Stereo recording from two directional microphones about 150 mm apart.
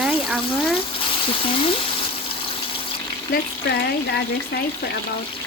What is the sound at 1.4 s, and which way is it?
Speech, 35° left (ahead or behind).